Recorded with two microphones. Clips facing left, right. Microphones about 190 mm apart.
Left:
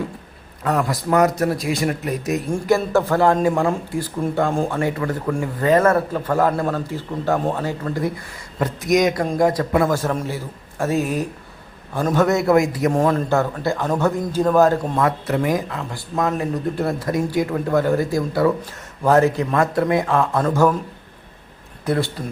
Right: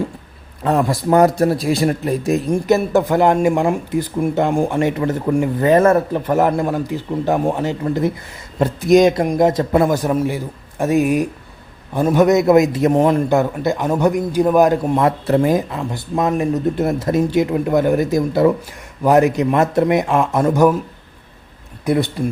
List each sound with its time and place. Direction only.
0.6 s speech: 30° right (ahead or behind)
2.5 s a man's voice: 20° right (ahead or behind)
21.8 s a man's voice: 15° right (ahead or behind)